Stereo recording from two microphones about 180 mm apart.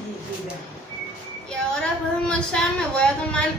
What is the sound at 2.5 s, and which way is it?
Speech, 5° left (ahead or behind).